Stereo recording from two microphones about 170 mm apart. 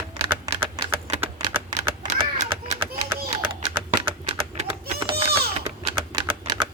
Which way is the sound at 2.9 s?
40° right (ahead or behind).